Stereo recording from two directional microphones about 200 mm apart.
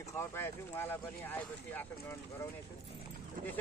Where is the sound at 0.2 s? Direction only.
10° left (ahead or behind).